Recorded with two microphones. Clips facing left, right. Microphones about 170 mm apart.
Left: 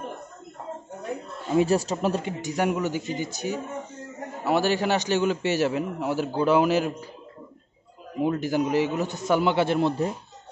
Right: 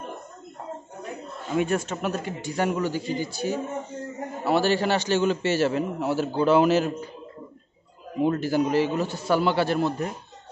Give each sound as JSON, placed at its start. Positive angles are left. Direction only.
{"t": 1.6, "sound": "speech", "side_deg": 35}
{"t": 2.4, "sound": "a man's voice", "side_deg": 10}
{"t": 8.2, "sound": "a man's voice", "side_deg": 15}